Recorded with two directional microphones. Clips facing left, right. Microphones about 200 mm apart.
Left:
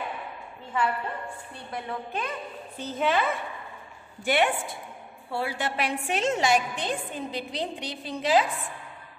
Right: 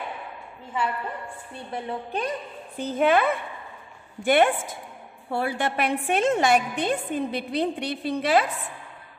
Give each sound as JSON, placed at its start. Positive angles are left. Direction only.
{"t": 1.7, "sound": "a woman's voice", "side_deg": -30}
{"t": 2.8, "sound": "a woman's voice", "side_deg": -55}